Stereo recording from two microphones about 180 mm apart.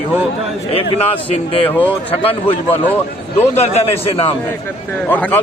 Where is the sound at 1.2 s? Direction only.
30° left (ahead or behind).